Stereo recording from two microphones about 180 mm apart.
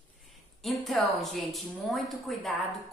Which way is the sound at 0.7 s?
Centre (ahead or behind).